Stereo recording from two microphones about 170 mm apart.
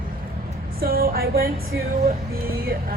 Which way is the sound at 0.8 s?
60° right (ahead or behind).